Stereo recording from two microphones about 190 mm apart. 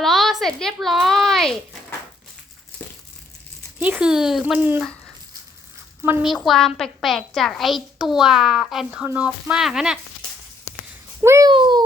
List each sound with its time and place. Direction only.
0.0 s a woman's voice: centre (ahead or behind)
3.8 s a woman's voice: 10° right (ahead or behind)
6.0 s a woman's voice: 10° right (ahead or behind)
11.2 s a child's voice: 15° right (ahead or behind)